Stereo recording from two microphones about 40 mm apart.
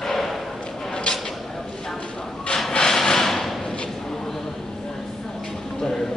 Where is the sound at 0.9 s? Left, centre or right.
Left.